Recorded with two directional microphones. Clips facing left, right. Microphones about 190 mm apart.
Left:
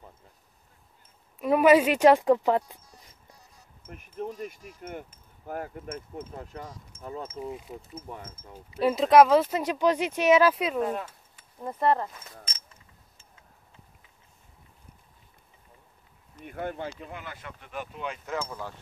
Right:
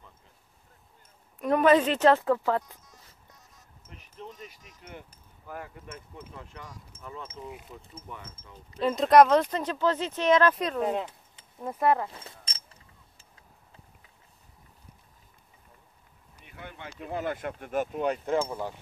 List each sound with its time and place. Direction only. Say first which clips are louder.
1.4 s speech: left 2 dB; 5° left (ahead or behind)
3.0 s music: left 2 dB; 15° left (ahead or behind)
3.9 s speech: left 9 dB; 50° left (ahead or behind); by 8.2 s 35° left (ahead or behind)
8.5 s speech: left 2 dB; 10° left (ahead or behind)
10.8 s a sound: even; 20° right (ahead or behind)
11.6 s speech: even; 5° right (ahead or behind)
12.1 s speech: even; 30° right (ahead or behind)
16.4 s speech: left 11 dB; 50° left (ahead or behind)
17.1 s speech: right 10 dB; 50° right (ahead or behind); by 18.6 s 30° right (ahead or behind)